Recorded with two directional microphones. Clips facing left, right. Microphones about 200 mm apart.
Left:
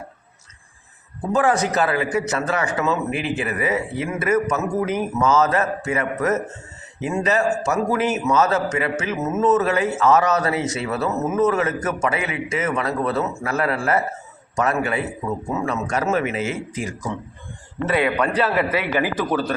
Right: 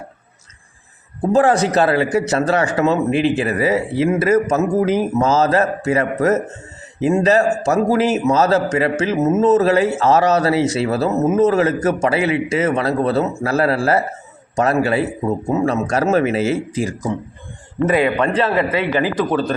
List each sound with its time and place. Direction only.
1.3 s speech: 30° right (ahead or behind)
11.1 s speech: 20° right (ahead or behind)
17.9 s a man's voice: centre (ahead or behind)